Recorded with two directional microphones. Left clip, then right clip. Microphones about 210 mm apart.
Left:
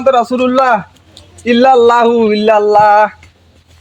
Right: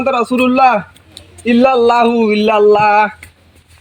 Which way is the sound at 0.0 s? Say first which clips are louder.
Left 3 dB; 25° left (ahead or behind).